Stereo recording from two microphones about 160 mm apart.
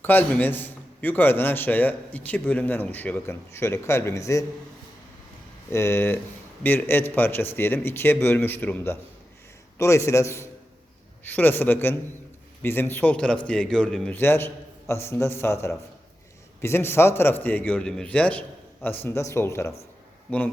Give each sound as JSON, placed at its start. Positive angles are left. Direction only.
{"t": 0.0, "sound": "a man's voice", "side_deg": 10}
{"t": 5.7, "sound": "a man's voice", "side_deg": 15}